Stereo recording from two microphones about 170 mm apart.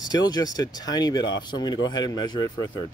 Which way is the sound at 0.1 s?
25° left (ahead or behind).